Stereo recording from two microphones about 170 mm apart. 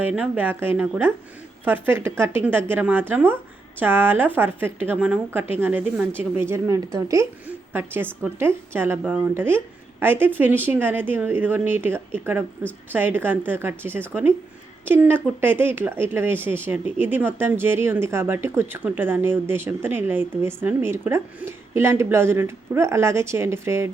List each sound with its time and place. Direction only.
0.0 s speech: 10° right (ahead or behind)